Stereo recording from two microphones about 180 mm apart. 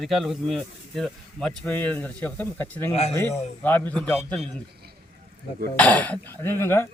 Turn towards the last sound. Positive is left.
turn(degrees=15)  # may be behind; listen again after turning